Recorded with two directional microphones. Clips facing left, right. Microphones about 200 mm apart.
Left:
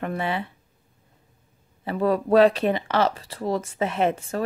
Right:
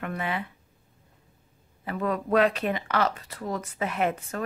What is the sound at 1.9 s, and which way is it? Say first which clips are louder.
Speech: left 6 dB; 30° left (ahead or behind).